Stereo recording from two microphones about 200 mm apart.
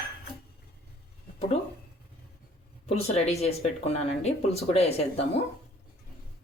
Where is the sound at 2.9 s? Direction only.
30° left (ahead or behind).